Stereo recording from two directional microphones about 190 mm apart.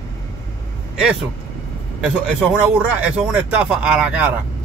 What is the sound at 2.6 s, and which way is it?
Speech, 5° right (ahead or behind).